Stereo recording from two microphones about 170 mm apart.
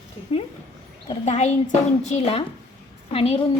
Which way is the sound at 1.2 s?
40° left (ahead or behind).